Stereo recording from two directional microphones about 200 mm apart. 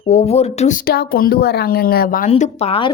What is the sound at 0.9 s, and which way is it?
A woman's voice, 50° left (ahead or behind).